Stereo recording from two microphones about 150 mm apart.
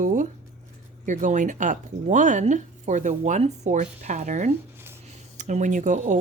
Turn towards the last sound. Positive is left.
turn(degrees=-55)  # may be behind; listen again after turning